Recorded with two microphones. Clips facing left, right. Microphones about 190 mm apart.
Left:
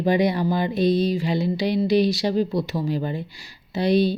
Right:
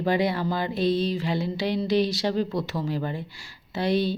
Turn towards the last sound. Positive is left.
turn(degrees=15)  # may be behind; listen again after turning